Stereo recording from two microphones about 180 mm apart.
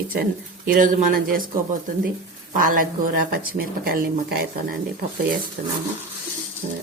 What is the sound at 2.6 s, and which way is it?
Speech, 50° right (ahead or behind).